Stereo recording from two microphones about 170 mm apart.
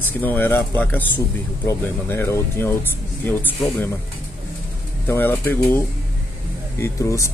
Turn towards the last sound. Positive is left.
turn(degrees=20)  # may be behind; listen again after turning